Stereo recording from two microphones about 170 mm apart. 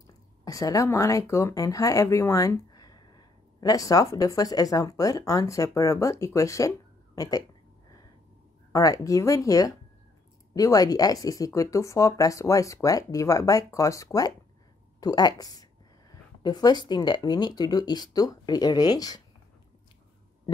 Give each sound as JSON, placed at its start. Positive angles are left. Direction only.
{"t": 0.0, "sound": "speech", "side_deg": 20}
{"t": 8.7, "sound": "speech", "side_deg": 20}